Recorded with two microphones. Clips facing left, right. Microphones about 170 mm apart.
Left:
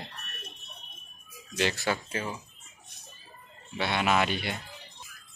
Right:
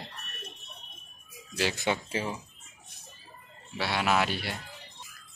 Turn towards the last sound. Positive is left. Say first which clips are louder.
# left 1 dB
turn(degrees=-5)  # may be behind; listen again after turning